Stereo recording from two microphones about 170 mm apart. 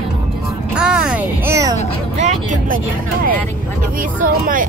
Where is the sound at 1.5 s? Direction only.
20° right (ahead or behind).